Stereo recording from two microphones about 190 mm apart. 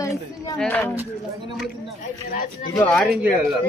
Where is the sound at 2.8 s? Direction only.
5° left (ahead or behind).